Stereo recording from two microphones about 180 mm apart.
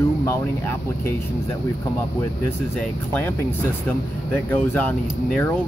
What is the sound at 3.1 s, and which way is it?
Speech, 10° left (ahead or behind).